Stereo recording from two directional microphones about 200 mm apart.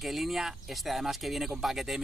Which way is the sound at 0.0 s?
Centre (ahead or behind).